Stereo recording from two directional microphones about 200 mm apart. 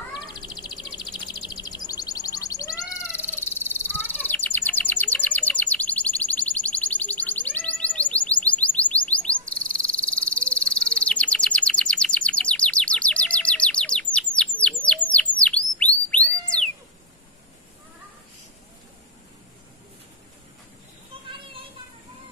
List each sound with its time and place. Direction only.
0.1 s bird: 20° left (ahead or behind); by 16.6 s 5° left (ahead or behind)